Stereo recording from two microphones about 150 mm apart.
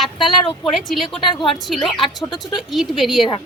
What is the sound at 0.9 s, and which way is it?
A woman's voice, centre (ahead or behind).